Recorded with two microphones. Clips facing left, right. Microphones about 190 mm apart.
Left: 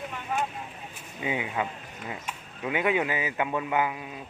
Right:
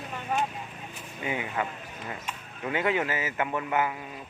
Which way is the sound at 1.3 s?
20° left (ahead or behind).